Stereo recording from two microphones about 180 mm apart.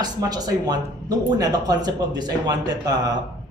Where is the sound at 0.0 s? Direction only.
20° right (ahead or behind).